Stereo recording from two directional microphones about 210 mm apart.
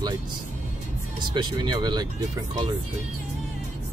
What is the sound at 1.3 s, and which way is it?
Speech, 20° right (ahead or behind).